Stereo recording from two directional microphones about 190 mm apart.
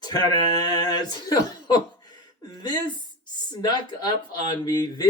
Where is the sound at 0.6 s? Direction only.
20° left (ahead or behind).